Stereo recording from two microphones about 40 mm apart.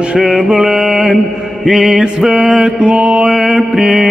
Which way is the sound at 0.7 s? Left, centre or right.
Centre.